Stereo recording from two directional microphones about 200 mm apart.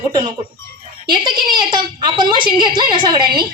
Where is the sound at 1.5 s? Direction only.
20° right (ahead or behind).